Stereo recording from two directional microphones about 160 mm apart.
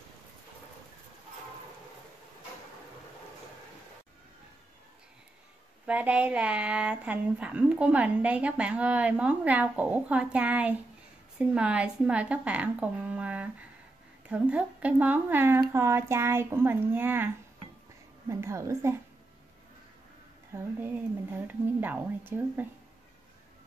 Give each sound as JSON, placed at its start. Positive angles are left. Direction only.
{"t": 5.9, "sound": "speech", "side_deg": -10}
{"t": 18.3, "sound": "speech", "side_deg": -20}
{"t": 20.5, "sound": "speech", "side_deg": -15}